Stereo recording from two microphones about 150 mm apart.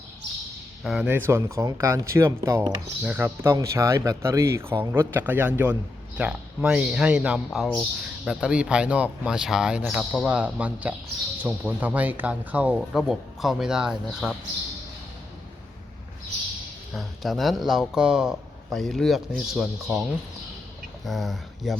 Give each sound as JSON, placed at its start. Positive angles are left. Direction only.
{"t": 0.9, "sound": "speech", "side_deg": -5}
{"t": 16.9, "sound": "speech", "side_deg": 0}